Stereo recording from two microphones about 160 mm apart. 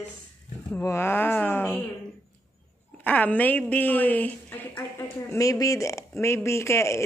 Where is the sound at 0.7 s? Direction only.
15° left (ahead or behind).